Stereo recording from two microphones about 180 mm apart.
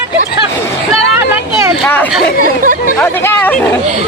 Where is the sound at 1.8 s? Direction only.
10° left (ahead or behind).